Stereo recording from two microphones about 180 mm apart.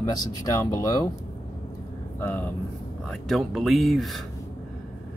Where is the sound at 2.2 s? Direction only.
10° left (ahead or behind).